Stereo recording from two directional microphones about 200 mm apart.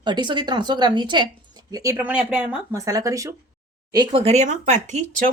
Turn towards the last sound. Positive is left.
turn(degrees=-40)  # may be behind; listen again after turning